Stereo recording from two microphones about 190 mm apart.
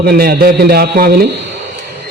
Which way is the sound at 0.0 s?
50° right (ahead or behind).